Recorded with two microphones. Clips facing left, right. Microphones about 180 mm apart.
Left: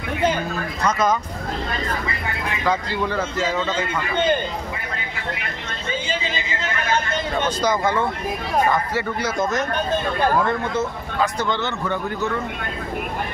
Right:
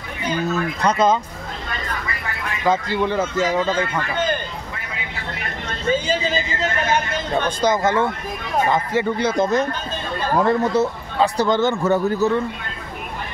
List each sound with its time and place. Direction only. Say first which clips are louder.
0.5 s speech: right 3 dB; 30° right (ahead or behind)
2.6 s speech: right 4 dB; 20° right (ahead or behind)
5.9 s speech: right 7 dB; 40° right (ahead or behind)
7.6 s speech: right 3 dB; 25° right (ahead or behind); by 12.3 s 45° right (ahead or behind)